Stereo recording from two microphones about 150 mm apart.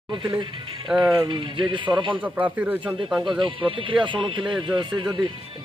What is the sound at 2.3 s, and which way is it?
Speech, 10° right (ahead or behind).